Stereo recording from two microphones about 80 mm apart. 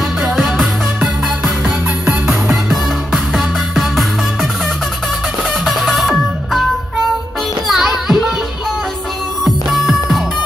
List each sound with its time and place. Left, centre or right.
0.2 s music: centre
2.0 s music: centre
2.5 s music: centre
5.5 s music: centre
7.6 s music: centre
9.4 s music: centre